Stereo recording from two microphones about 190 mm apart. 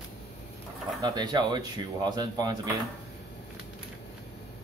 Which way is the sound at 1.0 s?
20° right (ahead or behind).